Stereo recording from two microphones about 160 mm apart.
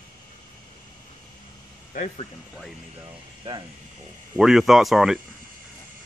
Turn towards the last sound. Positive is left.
turn(degrees=-5)  # may be behind; listen again after turning